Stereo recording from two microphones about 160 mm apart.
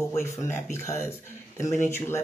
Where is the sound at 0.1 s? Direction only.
15° left (ahead or behind).